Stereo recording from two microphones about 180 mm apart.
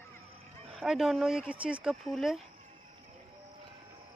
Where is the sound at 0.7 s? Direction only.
5° right (ahead or behind).